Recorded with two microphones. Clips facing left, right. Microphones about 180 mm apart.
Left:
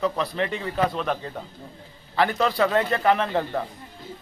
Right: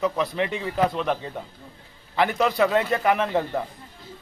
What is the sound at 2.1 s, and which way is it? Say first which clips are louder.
A man's voice: right 1 dB; 20° right (ahead or behind).